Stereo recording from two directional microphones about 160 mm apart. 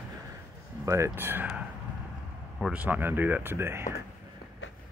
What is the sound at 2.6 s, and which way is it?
Speech, 5° right (ahead or behind).